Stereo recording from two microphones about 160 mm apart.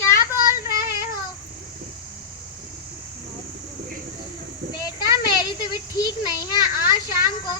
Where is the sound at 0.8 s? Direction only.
15° right (ahead or behind).